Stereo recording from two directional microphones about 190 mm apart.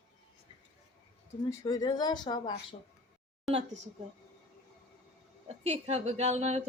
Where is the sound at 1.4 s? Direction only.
20° left (ahead or behind).